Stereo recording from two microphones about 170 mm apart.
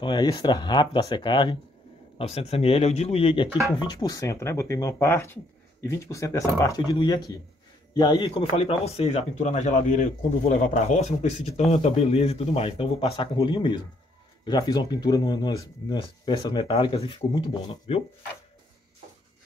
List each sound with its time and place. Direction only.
0.0 s speech: 25° left (ahead or behind)